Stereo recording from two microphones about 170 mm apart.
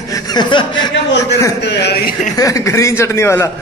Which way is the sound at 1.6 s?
80° left.